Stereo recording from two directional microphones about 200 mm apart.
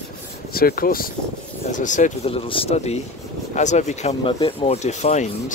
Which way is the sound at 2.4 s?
30° left (ahead or behind).